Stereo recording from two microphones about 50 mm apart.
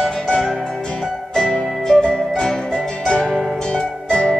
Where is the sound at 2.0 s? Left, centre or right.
Centre.